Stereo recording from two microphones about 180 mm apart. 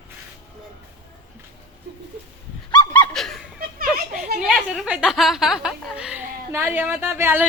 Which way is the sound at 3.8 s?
55° right (ahead or behind).